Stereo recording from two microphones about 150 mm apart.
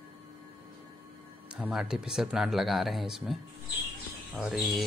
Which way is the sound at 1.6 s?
5° right (ahead or behind).